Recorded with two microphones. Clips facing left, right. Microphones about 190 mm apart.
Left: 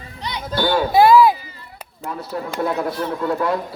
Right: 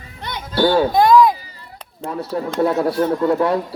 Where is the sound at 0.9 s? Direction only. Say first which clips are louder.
Left 3 dB; 5° left (ahead or behind).